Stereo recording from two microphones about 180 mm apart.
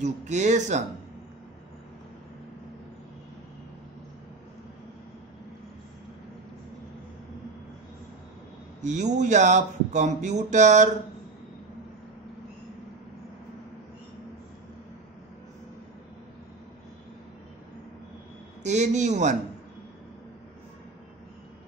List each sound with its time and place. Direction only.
0.0 s speech: 40° right (ahead or behind)
8.8 s speech: 40° right (ahead or behind)
18.6 s speech: 40° right (ahead or behind)